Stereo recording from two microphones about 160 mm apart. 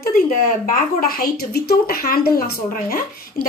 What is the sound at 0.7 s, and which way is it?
A woman's voice, 65° left (ahead or behind).